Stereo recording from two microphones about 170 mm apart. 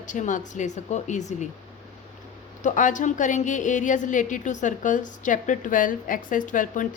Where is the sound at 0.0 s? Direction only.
45° left (ahead or behind).